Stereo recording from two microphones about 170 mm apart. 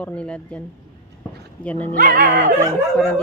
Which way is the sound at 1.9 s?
55° right (ahead or behind).